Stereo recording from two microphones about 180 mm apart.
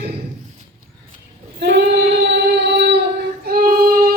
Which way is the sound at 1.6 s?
70° right (ahead or behind).